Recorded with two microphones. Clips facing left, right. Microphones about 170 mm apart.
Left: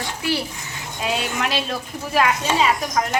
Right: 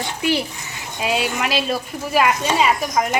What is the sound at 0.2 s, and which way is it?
A child's voice, 15° right (ahead or behind).